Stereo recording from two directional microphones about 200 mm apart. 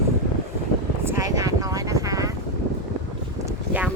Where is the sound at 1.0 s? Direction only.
15° right (ahead or behind).